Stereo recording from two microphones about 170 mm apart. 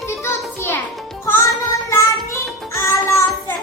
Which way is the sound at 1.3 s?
15° left (ahead or behind).